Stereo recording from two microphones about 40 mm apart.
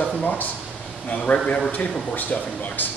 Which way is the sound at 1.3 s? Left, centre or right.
Left.